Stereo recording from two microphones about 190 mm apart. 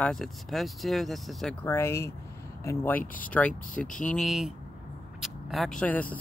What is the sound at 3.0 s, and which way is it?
Speech, 45° left (ahead or behind).